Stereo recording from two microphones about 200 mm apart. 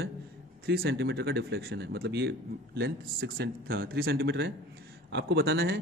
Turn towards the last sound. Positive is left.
turn(degrees=-50)  # may be behind; listen again after turning